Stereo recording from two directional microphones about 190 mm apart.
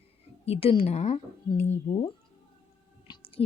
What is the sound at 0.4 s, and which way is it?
A woman's voice, 30° left (ahead or behind).